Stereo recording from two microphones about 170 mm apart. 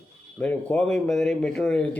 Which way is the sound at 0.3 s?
5° left (ahead or behind).